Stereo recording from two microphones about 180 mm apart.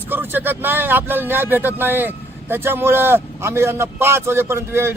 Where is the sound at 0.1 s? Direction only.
10° right (ahead or behind).